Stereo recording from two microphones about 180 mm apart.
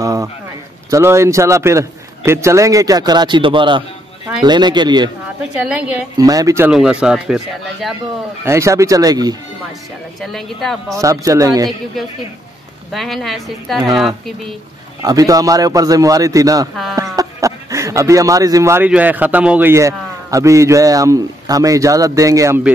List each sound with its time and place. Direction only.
0.0 s a sound: 20° right (ahead or behind)
0.8 s a man's voice: 15° right (ahead or behind)
5.7 s a man's voice: 5° right (ahead or behind)
6.1 s a man's voice: 20° right (ahead or behind)
6.7 s speech: 5° right (ahead or behind)
8.5 s a man's voice: 15° right (ahead or behind)
10.2 s speech: centre (ahead or behind)
11.0 s a man's voice: 20° right (ahead or behind)
12.9 s speech: centre (ahead or behind)
15.0 s a man's voice: 20° right (ahead or behind)